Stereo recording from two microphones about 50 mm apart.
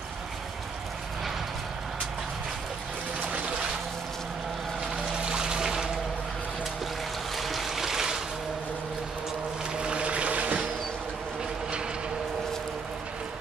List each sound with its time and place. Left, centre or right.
5.2 s boat: centre
7.3 s stream: centre
9.8 s music: centre